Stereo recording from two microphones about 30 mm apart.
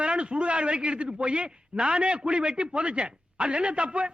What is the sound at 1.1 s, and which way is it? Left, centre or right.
A man's voice, right.